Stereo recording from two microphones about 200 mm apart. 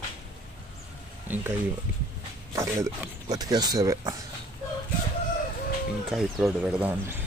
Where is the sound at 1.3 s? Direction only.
10° right (ahead or behind).